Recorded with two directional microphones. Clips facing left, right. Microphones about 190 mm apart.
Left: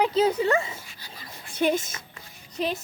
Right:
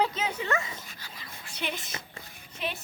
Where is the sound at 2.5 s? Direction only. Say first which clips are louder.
Left 7 dB; 35° left (ahead or behind).